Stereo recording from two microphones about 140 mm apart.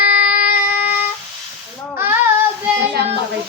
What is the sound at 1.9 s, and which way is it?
Child singing, 15° right (ahead or behind).